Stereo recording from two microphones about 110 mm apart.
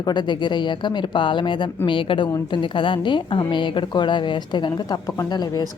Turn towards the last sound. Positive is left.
turn(degrees=35)  # may be behind; listen again after turning